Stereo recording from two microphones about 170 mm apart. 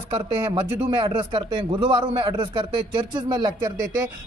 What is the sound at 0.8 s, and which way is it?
A man's voice, 30° right (ahead or behind).